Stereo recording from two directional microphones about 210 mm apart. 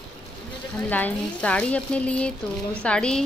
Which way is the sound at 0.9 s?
5° left (ahead or behind).